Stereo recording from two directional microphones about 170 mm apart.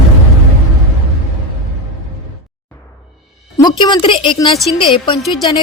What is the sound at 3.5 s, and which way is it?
A woman's voice, 25° left (ahead or behind).